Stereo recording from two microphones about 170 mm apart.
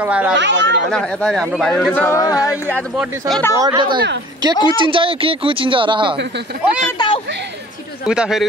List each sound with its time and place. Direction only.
0.0 s speech: 10° right (ahead or behind)
0.4 s speech: 90° right
0.9 s speech: 5° left (ahead or behind)
2.0 s a sound: 15° left (ahead or behind)
3.0 s speech: centre (ahead or behind)
3.5 s a woman's voice: 25° right (ahead or behind)
7.0 s a sound: 25° left (ahead or behind)
8.1 s speech: 5° right (ahead or behind)